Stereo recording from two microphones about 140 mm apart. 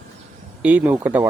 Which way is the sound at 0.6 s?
10° right (ahead or behind).